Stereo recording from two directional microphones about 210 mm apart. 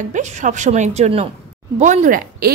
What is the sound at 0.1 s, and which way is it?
A woman's voice, 35° right (ahead or behind).